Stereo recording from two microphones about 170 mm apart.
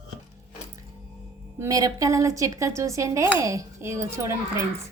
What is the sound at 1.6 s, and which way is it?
Speech, 20° right (ahead or behind).